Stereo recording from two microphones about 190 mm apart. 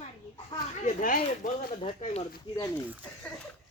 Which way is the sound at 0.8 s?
45° left (ahead or behind).